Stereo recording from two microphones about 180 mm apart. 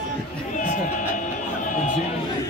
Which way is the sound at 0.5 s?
45° left (ahead or behind).